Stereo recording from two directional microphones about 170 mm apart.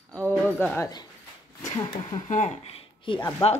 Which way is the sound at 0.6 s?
15° left (ahead or behind).